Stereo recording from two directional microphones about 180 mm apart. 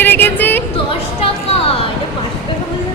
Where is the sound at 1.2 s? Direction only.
35° left (ahead or behind).